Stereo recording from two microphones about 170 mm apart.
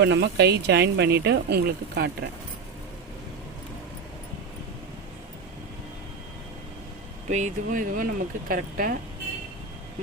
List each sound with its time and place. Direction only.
0.0 s speech: 85° right; by 2.0 s 65° right (ahead or behind)
7.3 s speech: 45° right (ahead or behind)